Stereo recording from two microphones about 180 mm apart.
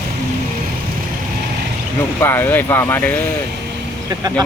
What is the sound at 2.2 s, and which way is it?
Speech, 10° left (ahead or behind).